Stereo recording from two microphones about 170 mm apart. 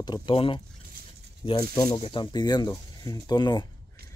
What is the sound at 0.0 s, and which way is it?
Speech, 30° left (ahead or behind).